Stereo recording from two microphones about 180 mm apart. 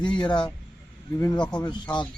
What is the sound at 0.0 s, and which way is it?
Speech, 25° left (ahead or behind).